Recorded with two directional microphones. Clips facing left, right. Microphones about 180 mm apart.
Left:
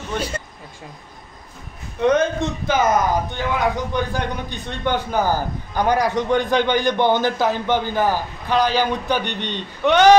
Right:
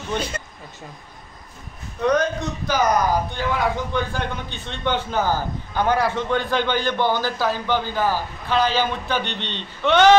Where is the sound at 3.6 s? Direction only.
15° left (ahead or behind).